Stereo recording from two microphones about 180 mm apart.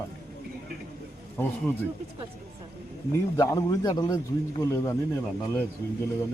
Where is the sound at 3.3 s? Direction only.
15° left (ahead or behind).